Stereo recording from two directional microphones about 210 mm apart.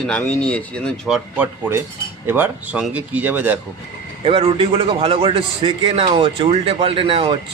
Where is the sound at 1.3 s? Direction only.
10° right (ahead or behind).